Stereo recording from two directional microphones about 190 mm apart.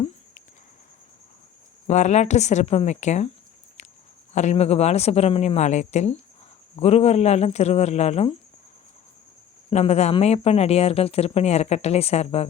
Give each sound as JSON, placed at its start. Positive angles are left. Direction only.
{"t": 1.9, "sound": "speech", "side_deg": 35}
{"t": 4.4, "sound": "speech", "side_deg": 35}
{"t": 9.6, "sound": "speech", "side_deg": 35}